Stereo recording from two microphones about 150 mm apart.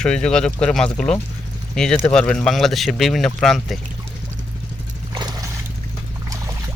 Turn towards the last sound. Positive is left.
turn(degrees=-30)  # may be behind; listen again after turning